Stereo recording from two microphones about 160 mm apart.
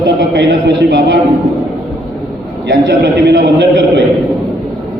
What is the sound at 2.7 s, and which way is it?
Speech, 90° right.